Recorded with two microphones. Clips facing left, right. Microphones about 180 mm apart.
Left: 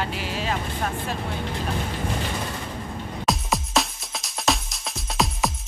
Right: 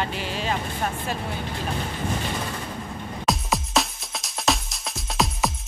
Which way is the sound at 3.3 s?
Centre (ahead or behind).